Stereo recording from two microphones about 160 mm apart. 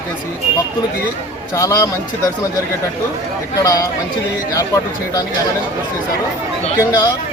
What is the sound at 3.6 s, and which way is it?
Speech, 20° left (ahead or behind).